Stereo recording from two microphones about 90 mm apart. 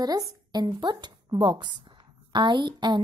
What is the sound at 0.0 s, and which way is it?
A woman's voice, 45° right (ahead or behind).